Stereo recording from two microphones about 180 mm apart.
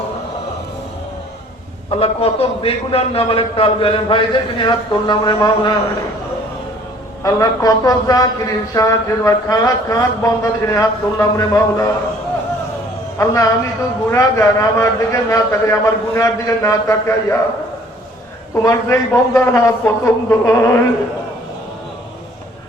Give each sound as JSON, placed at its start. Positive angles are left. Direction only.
{"t": 1.9, "sound": "a man's voice", "side_deg": 35}
{"t": 7.2, "sound": "a man's voice", "side_deg": 20}
{"t": 13.1, "sound": "a man's voice", "side_deg": 20}
{"t": 18.5, "sound": "a man's voice", "side_deg": 15}